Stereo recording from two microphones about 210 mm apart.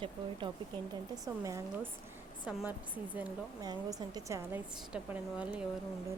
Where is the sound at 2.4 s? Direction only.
5° right (ahead or behind).